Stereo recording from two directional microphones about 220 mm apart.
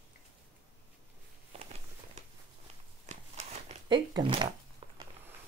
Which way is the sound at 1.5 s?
30° right (ahead or behind).